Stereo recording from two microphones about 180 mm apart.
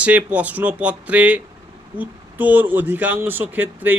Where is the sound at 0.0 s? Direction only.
10° right (ahead or behind).